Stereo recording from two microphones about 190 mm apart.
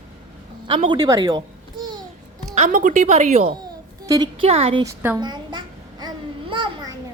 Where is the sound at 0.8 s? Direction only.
20° right (ahead or behind).